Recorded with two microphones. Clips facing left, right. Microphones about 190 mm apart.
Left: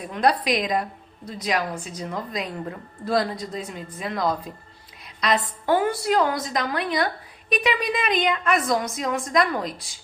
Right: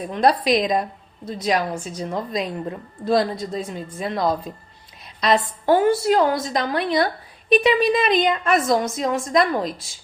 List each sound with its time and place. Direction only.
0.1 s a woman's voice: 30° right (ahead or behind)